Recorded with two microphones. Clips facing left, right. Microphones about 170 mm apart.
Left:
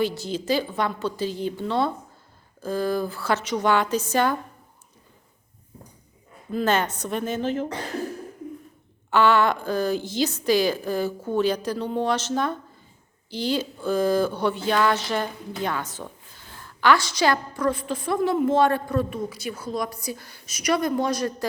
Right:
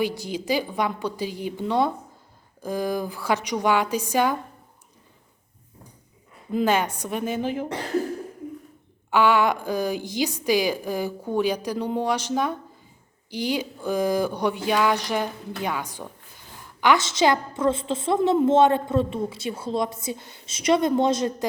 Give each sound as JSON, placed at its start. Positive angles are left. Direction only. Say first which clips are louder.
{"t": 0.0, "sound": "a woman's voice", "louder": "left 1 dB", "side_deg": -15}
{"t": 6.5, "sound": "a woman's voice", "louder": "right 1 dB", "side_deg": -15}
{"t": 9.0, "sound": "a woman's voice", "louder": "even", "side_deg": -10}